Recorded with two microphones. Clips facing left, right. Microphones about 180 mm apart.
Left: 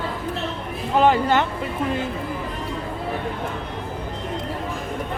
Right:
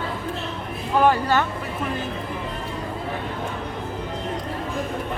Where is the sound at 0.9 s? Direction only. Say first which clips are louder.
Left 1 dB; 20° left (ahead or behind).